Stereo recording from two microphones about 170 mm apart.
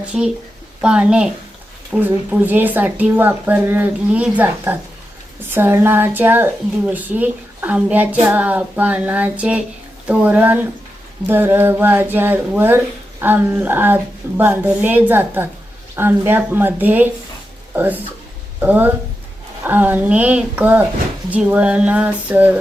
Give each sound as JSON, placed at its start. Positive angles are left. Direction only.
{"t": 0.1, "sound": "a woman's voice", "side_deg": -5}